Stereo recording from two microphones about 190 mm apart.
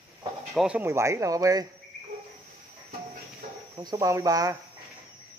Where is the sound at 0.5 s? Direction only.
5° right (ahead or behind).